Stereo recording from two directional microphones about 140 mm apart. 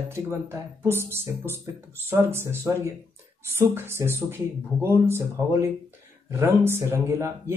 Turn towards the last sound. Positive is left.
turn(degrees=-20)  # may be behind; listen again after turning